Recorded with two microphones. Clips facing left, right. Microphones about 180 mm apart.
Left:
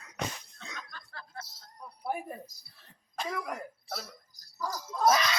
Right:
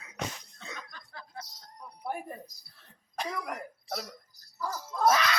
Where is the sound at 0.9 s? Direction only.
15° right (ahead or behind).